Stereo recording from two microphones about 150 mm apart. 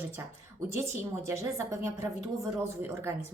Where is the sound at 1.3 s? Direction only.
20° right (ahead or behind).